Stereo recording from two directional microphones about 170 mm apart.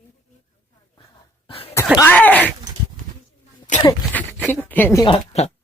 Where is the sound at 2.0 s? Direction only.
10° left (ahead or behind).